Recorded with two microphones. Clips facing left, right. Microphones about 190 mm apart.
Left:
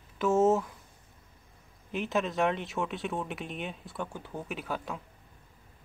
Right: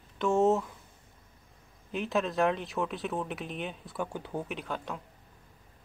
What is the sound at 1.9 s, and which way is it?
Speech, centre (ahead or behind).